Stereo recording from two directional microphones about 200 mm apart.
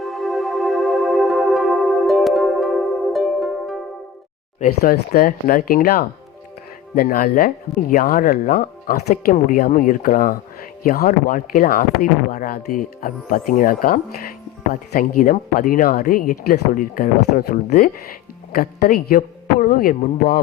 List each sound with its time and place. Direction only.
0.0 s music: centre (ahead or behind)
4.6 s speech: 45° left (ahead or behind)